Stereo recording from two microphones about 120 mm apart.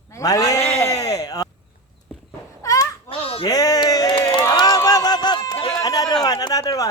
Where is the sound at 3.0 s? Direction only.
50° left (ahead or behind).